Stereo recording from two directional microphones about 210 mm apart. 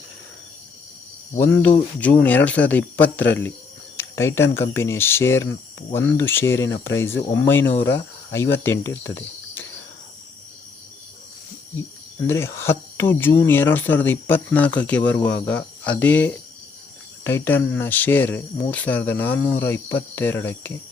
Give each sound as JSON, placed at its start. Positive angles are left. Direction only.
{"t": 1.4, "sound": "speech", "side_deg": 10}
{"t": 12.3, "sound": "speech", "side_deg": 10}